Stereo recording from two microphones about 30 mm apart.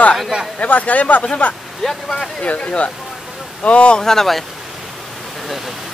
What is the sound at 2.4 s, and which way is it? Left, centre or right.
Speech, left.